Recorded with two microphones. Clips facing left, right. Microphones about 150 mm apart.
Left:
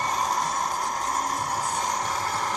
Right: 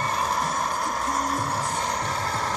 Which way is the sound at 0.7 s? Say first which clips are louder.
Right 1 dB; 15° left (ahead or behind).